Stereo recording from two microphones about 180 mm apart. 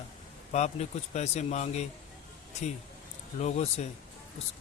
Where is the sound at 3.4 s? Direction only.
40° left (ahead or behind).